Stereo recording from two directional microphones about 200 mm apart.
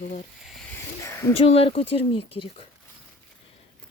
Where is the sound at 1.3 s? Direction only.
30° left (ahead or behind).